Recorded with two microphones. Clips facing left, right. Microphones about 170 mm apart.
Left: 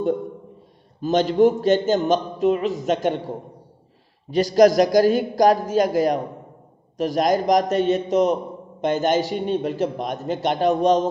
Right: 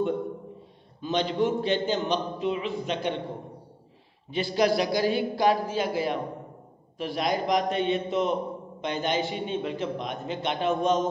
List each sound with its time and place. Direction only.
1.0 s a man's voice: 45° left (ahead or behind)